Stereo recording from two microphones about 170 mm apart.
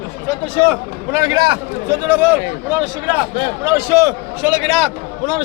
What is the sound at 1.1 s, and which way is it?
Speech, 20° right (ahead or behind).